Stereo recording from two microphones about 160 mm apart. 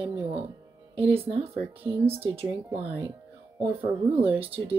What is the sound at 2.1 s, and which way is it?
Speech, 35° right (ahead or behind).